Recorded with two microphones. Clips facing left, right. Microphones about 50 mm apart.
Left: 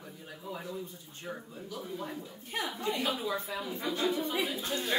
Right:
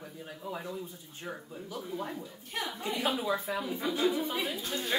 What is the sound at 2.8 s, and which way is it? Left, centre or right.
Speech, centre.